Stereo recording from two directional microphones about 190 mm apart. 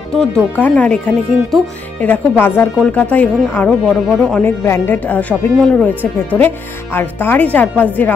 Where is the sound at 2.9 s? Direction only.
10° left (ahead or behind).